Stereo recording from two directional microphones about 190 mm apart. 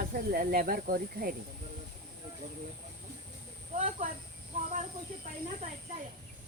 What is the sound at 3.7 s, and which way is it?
Speech, 40° right (ahead or behind).